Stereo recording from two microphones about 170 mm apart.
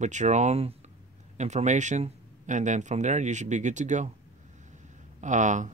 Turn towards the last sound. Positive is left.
turn(degrees=-45)  # may be behind; listen again after turning